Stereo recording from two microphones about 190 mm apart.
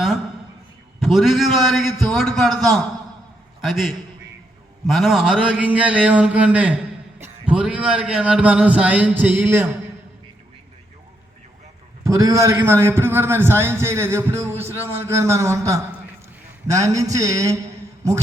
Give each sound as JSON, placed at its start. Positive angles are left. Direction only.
{"t": 0.9, "sound": "a man's voice", "side_deg": 0}
{"t": 12.0, "sound": "a man's voice", "side_deg": -15}